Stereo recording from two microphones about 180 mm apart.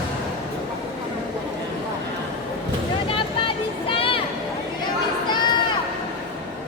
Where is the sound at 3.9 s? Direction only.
30° left (ahead or behind).